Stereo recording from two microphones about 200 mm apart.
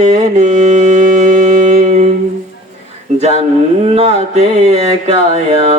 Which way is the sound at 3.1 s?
35° right (ahead or behind).